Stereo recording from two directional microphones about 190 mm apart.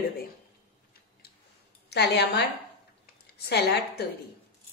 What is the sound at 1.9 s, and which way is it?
A woman's voice, 60° left (ahead or behind).